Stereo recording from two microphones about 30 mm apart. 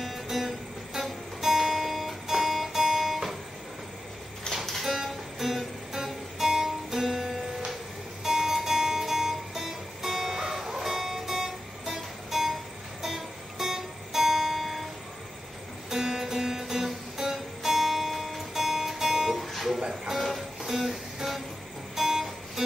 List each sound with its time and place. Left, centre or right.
0.0 s music: centre
1.8 s music: centre
4.5 s music: left
4.8 s music: centre
15.9 s music: centre
18.5 s music: centre
19.3 s music: centre
19.8 s music: centre